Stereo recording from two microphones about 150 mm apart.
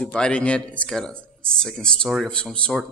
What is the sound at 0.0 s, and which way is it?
A man's voice, 5° left (ahead or behind).